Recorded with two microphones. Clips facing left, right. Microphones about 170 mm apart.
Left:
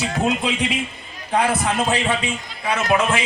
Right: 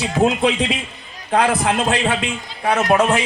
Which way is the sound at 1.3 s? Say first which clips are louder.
Right 3 dB; 80° right.